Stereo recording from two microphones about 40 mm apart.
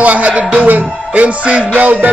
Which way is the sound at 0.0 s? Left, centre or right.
Right.